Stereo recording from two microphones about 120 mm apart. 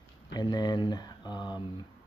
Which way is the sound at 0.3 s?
35° left (ahead or behind).